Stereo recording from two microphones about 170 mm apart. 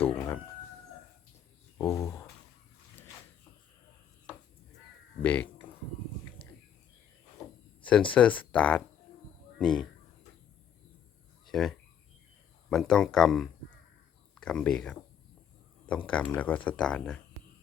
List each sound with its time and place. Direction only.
0.0 s fowl: 10° left (ahead or behind)
1.8 s speech: 15° left (ahead or behind)
5.2 s speech: 10° left (ahead or behind)
7.8 s speech: 5° left (ahead or behind)
11.4 s a sound: centre (ahead or behind)
12.7 s speech: 5° left (ahead or behind)